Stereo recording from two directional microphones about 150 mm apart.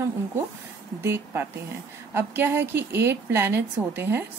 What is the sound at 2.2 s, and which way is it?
A woman's voice, 15° right (ahead or behind).